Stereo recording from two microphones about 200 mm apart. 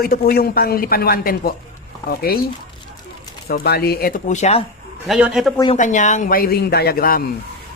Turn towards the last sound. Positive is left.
turn(degrees=50)  # may be behind; listen again after turning